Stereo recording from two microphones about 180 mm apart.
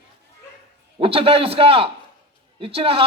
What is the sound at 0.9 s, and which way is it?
A man's voice, 30° right (ahead or behind).